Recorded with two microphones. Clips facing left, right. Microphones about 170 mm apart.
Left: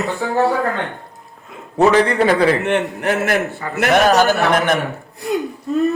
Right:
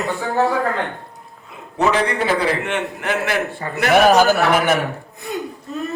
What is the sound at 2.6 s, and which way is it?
Speech, 45° left (ahead or behind).